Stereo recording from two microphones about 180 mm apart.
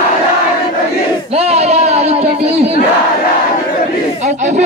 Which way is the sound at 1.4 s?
35° right (ahead or behind).